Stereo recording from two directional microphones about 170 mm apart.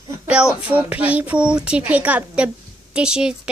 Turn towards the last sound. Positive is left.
turn(degrees=-5)  # may be behind; listen again after turning